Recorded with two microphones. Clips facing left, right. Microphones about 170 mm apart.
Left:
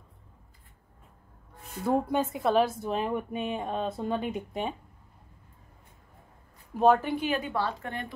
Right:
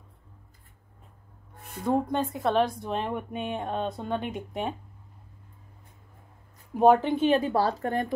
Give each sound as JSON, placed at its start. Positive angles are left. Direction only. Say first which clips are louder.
{"t": 1.9, "sound": "speech", "louder": "even", "side_deg": 5}
{"t": 6.8, "sound": "a woman's voice", "louder": "right 3 dB", "side_deg": -15}